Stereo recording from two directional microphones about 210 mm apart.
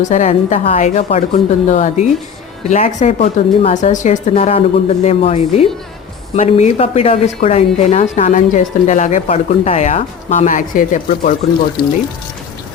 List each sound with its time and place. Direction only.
0.0 s speech: 35° left (ahead or behind)